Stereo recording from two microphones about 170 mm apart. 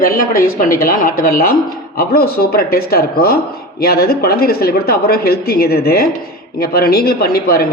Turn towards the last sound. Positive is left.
turn(degrees=60)  # may be behind; listen again after turning